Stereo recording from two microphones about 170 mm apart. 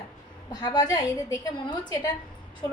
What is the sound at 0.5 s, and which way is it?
A woman's voice, 20° left (ahead or behind).